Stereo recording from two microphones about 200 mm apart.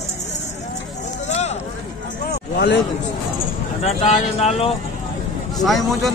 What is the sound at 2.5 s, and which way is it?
Speech, 55° left (ahead or behind).